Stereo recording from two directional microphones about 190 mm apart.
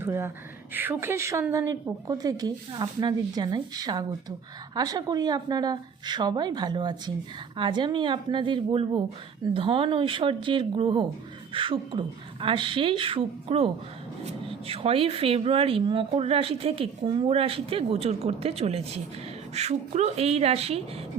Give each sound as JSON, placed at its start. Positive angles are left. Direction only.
{"t": 0.0, "sound": "a woman's voice", "side_deg": -10}
{"t": 14.7, "sound": "speech", "side_deg": -30}